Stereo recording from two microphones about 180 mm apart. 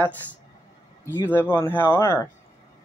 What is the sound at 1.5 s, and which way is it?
Speech, 10° left (ahead or behind).